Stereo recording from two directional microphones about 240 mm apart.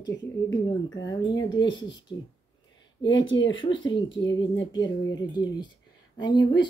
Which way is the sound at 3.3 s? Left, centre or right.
Left.